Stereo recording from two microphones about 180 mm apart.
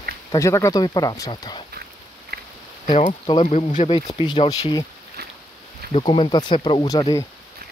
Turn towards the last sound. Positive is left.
turn(degrees=25)  # may be behind; listen again after turning